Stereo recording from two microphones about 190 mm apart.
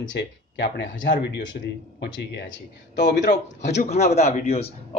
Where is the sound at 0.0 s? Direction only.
70° left (ahead or behind).